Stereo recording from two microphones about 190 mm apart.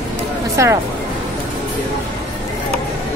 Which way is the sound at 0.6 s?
15° right (ahead or behind).